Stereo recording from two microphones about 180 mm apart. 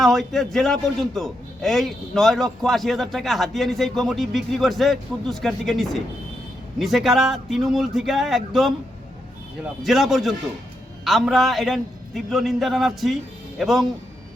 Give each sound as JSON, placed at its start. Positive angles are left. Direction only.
{"t": 0.0, "sound": "a man's voice", "side_deg": 0}
{"t": 9.8, "sound": "a man's voice", "side_deg": 0}